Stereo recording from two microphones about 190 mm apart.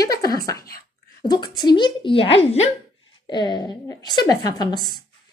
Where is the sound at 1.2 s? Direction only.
20° left (ahead or behind).